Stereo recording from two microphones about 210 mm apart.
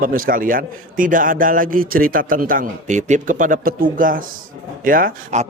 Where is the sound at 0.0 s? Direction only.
40° right (ahead or behind).